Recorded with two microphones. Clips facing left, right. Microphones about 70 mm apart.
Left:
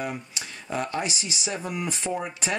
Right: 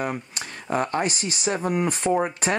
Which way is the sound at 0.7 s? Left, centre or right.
Right.